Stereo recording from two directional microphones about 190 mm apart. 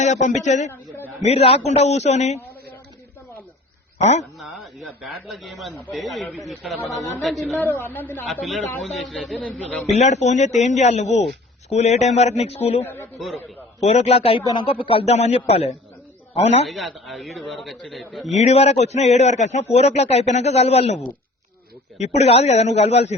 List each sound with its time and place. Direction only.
0.0 s a man's voice: 40° left (ahead or behind)
3.9 s a man's voice: 35° left (ahead or behind)
4.4 s speech: centre (ahead or behind)
7.5 s a woman's voice: 15° left (ahead or behind)
8.3 s speech: centre (ahead or behind)
9.9 s a man's voice: 35° left (ahead or behind)
12.8 s a woman's voice: 10° left (ahead or behind)
13.8 s a man's voice: 35° left (ahead or behind)
16.6 s speech: centre (ahead or behind)
18.3 s a man's voice: 35° left (ahead or behind)